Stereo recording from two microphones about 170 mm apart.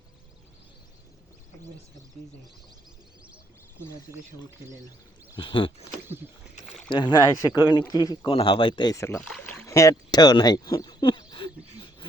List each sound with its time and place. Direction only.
5.4 s speech: 30° left (ahead or behind)
6.9 s speech: 25° left (ahead or behind)
9.2 s a sound: 10° left (ahead or behind); by 12.0 s 30° left (ahead or behind)